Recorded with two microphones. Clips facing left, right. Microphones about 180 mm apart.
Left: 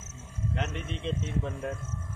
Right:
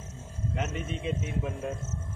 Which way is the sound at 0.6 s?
5° right (ahead or behind).